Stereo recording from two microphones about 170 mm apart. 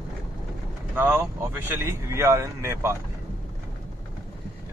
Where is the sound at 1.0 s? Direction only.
10° right (ahead or behind).